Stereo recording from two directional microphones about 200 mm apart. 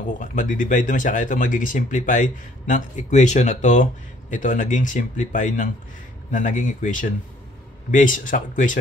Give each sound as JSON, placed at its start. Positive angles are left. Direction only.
{"t": 0.2, "sound": "speech", "side_deg": 40}